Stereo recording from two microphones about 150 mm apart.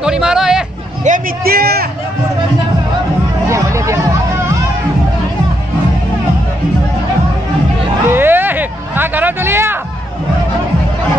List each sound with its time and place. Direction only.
0.0 s hubbub: 5° right (ahead or behind)
1.0 s a man's voice: 75° right (ahead or behind); by 1.9 s 90° right
3.4 s hubbub: 20° right (ahead or behind)
8.1 s a sound: 15° right (ahead or behind)